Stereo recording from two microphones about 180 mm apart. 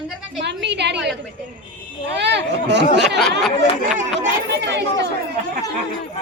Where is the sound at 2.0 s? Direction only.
70° right (ahead or behind).